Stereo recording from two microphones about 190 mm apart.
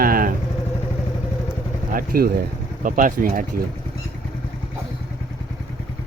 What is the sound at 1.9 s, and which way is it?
Speech, 50° right (ahead or behind).